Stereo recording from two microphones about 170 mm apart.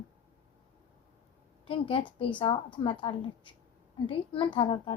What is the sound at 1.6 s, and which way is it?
A woman's voice, 30° left (ahead or behind).